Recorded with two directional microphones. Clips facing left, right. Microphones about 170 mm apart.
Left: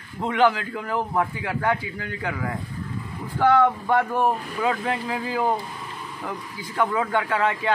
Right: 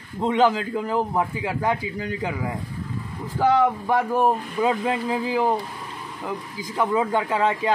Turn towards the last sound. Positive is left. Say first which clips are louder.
# right 1 dB
turn(degrees=-20)  # may be behind; listen again after turning